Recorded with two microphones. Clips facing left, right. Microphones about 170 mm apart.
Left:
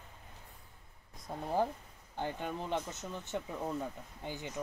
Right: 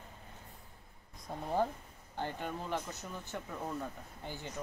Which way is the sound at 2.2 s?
15° left (ahead or behind).